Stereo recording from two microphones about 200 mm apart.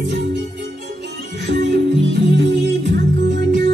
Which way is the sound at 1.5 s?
60° right (ahead or behind).